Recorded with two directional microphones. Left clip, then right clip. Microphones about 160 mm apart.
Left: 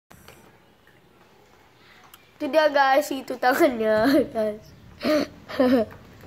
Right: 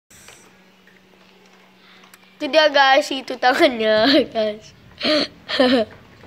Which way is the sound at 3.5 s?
15° right (ahead or behind).